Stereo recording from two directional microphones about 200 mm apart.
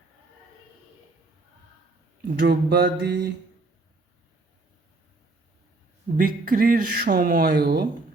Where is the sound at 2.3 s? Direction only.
50° right (ahead or behind).